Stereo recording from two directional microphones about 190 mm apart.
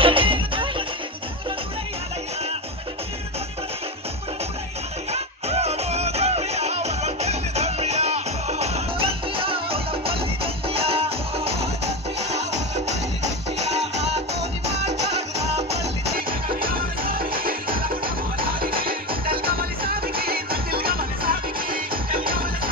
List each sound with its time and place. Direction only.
0.0 s music: 30° right (ahead or behind)
5.1 s music: 35° right (ahead or behind)
16.3 s music: 50° right (ahead or behind)